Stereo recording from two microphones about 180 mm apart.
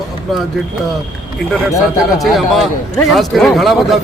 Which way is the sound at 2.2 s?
Centre (ahead or behind).